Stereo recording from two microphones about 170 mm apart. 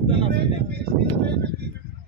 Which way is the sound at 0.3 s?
70° right (ahead or behind).